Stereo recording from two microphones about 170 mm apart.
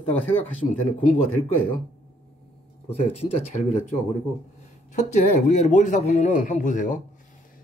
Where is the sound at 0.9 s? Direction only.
35° left (ahead or behind).